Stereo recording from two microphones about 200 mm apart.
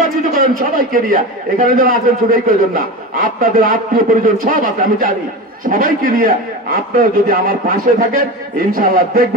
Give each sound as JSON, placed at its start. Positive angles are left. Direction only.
{"t": 0.3, "sound": "a man's voice", "side_deg": -45}